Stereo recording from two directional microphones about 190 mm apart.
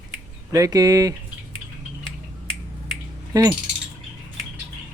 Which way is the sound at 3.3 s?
20° right (ahead or behind).